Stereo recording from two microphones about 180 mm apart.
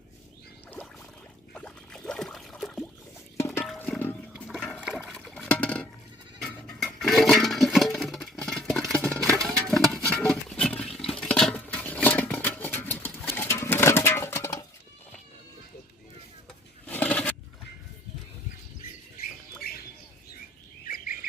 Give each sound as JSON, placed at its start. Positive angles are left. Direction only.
{"t": 1.5, "sound": "trickle", "side_deg": 5}
{"t": 3.3, "sound": "music", "side_deg": 15}
{"t": 3.8, "sound": "toilet flush", "side_deg": 10}
{"t": 4.9, "sound": "liquid", "side_deg": 0}
{"t": 6.4, "sound": "a sound", "side_deg": 5}
{"t": 16.8, "sound": "a sound", "side_deg": 10}
{"t": 19.6, "sound": "bird", "side_deg": 60}
{"t": 20.8, "sound": "bird", "side_deg": 50}